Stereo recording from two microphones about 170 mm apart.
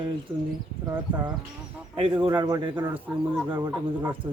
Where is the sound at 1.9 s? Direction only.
30° right (ahead or behind).